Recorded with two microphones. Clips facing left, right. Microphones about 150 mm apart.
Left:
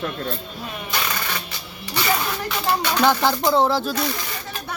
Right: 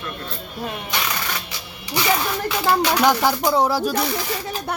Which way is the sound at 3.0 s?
10° right (ahead or behind).